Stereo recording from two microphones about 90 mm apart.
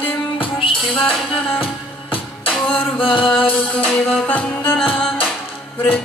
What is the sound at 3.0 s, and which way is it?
Music, 80° left.